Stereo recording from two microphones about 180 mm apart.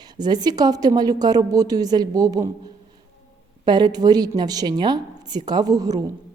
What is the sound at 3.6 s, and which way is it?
A woman's voice, 25° right (ahead or behind).